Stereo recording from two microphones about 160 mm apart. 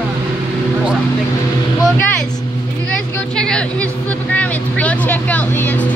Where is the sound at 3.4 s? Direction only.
5° left (ahead or behind).